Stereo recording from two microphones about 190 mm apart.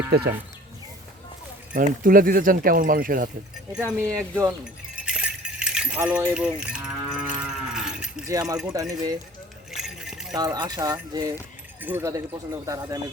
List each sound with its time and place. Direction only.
1.7 s speech: 50° right (ahead or behind)
3.7 s speech: 10° right (ahead or behind)
4.9 s keys jangling: 5° right (ahead or behind)
8.3 s speech: 20° right (ahead or behind)
9.7 s keys jangling: centre (ahead or behind)
10.3 s speech: 20° right (ahead or behind)